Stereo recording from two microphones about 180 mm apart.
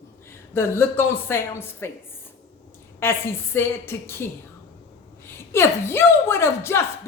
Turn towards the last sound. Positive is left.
turn(degrees=15)  # may be behind; listen again after turning